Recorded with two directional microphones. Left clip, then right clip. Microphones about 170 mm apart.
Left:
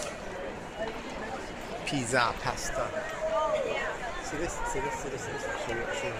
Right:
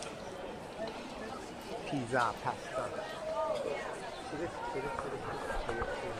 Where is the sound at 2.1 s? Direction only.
5° right (ahead or behind).